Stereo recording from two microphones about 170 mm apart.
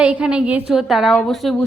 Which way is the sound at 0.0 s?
5° right (ahead or behind).